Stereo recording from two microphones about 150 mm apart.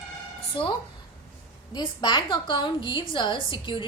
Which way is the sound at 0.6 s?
35° left (ahead or behind).